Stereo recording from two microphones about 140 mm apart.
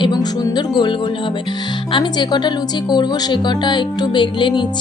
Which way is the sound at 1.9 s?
35° left (ahead or behind).